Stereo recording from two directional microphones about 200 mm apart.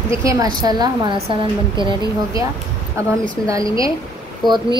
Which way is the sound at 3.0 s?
15° right (ahead or behind).